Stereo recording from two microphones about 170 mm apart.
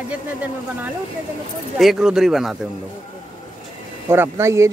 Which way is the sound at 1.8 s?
Centre (ahead or behind).